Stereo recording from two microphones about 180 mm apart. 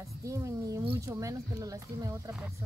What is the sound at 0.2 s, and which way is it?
Speech, 15° right (ahead or behind).